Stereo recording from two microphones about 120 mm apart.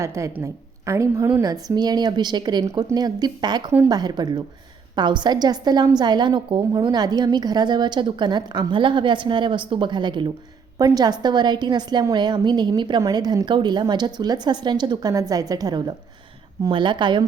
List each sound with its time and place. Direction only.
0.0 s a woman's voice: 25° right (ahead or behind); by 17.2 s 40° right (ahead or behind)